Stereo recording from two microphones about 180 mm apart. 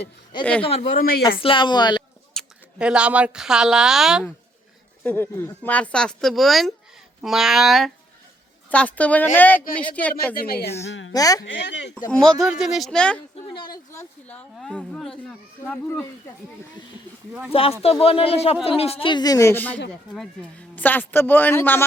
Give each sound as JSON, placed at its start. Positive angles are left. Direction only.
{"t": 0.6, "sound": "speech", "side_deg": 35}
{"t": 0.9, "sound": "speech", "side_deg": 55}
{"t": 1.4, "sound": "speech", "side_deg": 30}
{"t": 2.3, "sound": "speech", "side_deg": -5}
{"t": 5.0, "sound": "speech", "side_deg": 10}
{"t": 10.3, "sound": "speech", "side_deg": 60}
{"t": 10.8, "sound": "speech", "side_deg": 85}
{"t": 11.1, "sound": "speech", "side_deg": 20}
{"t": 11.4, "sound": "speech", "side_deg": 85}
{"t": 12.1, "sound": "speech", "side_deg": 5}
{"t": 13.3, "sound": "speech", "side_deg": 30}
{"t": 13.9, "sound": "speech", "side_deg": 10}
{"t": 17.5, "sound": "speech", "side_deg": 30}